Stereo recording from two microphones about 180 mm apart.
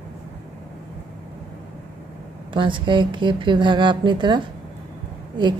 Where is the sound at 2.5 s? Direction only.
25° right (ahead or behind).